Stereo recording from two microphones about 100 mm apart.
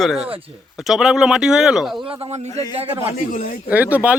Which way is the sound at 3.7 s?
15° right (ahead or behind).